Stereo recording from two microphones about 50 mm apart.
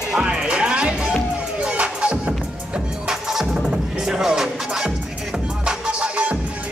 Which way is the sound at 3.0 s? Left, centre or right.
Centre.